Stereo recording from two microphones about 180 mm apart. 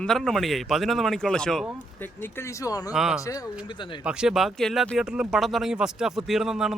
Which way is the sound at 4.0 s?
5° right (ahead or behind).